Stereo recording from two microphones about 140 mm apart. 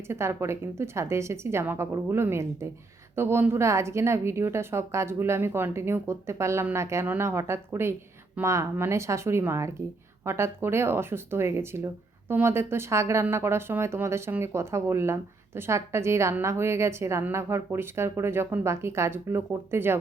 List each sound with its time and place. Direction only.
0.1 s speech: 20° right (ahead or behind)